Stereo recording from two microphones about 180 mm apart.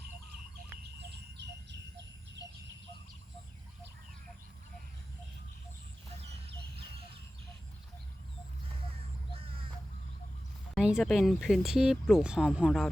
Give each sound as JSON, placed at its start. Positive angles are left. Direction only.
{"t": 0.8, "sound": "bird", "side_deg": -65}
{"t": 10.8, "sound": "speech", "side_deg": -5}